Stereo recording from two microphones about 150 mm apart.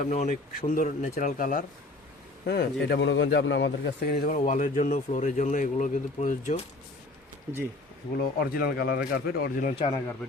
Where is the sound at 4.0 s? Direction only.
80° left; by 6.6 s 55° left (ahead or behind).